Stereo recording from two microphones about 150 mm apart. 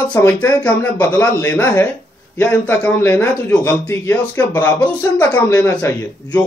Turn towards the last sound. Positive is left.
turn(degrees=15)  # may be behind; listen again after turning